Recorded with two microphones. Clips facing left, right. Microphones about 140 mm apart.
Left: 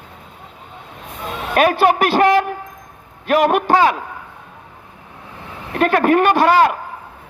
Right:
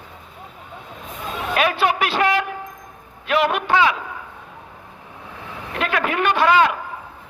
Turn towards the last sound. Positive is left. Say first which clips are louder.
# left 3 dB
turn(degrees=45)  # may be behind; listen again after turning